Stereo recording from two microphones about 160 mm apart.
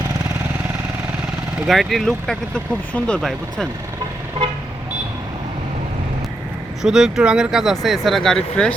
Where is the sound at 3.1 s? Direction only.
Centre (ahead or behind).